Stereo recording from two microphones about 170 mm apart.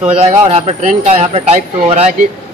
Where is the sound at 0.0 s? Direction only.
40° right (ahead or behind).